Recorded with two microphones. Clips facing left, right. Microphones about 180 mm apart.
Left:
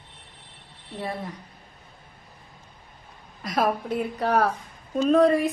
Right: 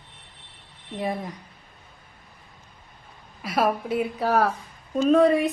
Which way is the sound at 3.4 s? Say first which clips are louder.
Right 1 dB; 5° right (ahead or behind).